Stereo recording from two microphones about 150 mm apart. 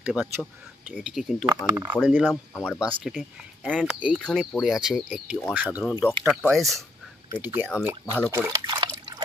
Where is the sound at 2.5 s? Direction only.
20° left (ahead or behind).